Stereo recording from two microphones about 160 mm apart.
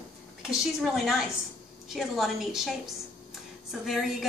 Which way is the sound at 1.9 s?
Centre (ahead or behind).